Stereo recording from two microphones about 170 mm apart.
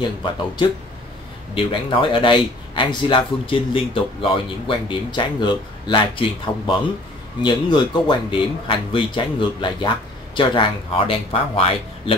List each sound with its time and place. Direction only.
1.5 s speech: 30° left (ahead or behind)